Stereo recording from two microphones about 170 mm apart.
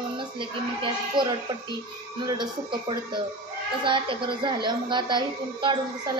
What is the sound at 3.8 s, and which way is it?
Speech, 30° right (ahead or behind).